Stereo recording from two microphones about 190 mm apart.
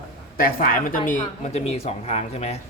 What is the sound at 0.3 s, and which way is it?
Speech, 50° left (ahead or behind).